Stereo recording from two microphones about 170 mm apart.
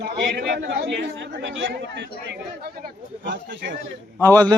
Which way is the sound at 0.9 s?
90° right.